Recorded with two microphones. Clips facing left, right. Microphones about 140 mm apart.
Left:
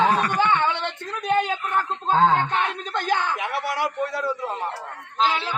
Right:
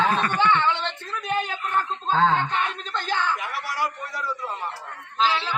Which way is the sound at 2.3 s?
60° left (ahead or behind).